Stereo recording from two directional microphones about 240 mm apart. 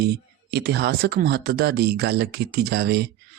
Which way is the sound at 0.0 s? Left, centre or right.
Right.